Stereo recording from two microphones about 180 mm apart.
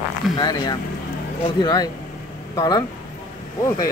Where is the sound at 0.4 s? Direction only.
20° left (ahead or behind).